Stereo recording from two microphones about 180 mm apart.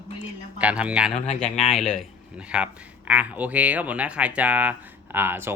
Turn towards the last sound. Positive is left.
turn(degrees=-10)  # may be behind; listen again after turning